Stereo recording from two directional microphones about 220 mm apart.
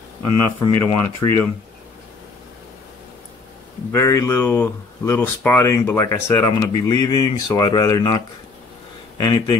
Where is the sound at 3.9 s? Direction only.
15° left (ahead or behind).